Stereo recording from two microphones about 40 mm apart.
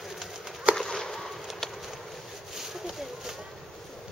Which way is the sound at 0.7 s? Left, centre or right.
Centre.